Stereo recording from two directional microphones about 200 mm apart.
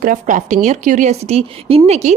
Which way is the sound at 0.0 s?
40° right (ahead or behind).